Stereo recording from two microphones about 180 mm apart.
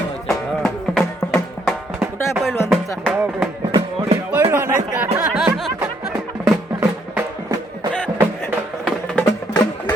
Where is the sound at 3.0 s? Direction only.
10° right (ahead or behind).